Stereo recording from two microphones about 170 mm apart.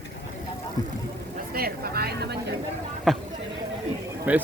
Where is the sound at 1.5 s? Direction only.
60° right (ahead or behind).